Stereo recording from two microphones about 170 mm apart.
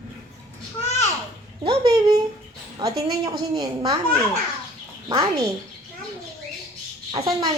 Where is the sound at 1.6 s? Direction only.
25° right (ahead or behind).